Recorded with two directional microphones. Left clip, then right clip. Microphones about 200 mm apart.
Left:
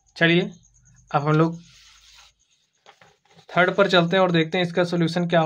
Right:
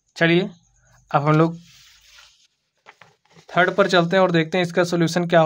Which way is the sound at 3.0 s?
25° right (ahead or behind).